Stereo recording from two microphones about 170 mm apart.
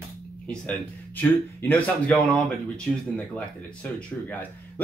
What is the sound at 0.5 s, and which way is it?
Speech, 10° left (ahead or behind).